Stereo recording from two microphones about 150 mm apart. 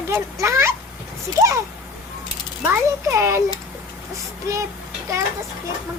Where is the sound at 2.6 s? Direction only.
20° right (ahead or behind).